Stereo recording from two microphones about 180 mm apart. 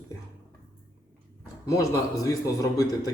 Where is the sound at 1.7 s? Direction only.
20° left (ahead or behind).